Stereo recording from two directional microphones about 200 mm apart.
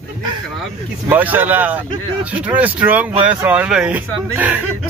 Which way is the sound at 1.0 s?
10° right (ahead or behind).